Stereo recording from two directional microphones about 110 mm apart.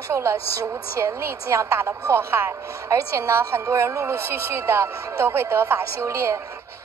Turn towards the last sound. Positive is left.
turn(degrees=-25)  # may be behind; listen again after turning